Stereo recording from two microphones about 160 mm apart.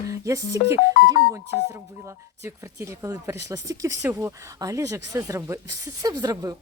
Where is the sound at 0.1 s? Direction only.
20° right (ahead or behind).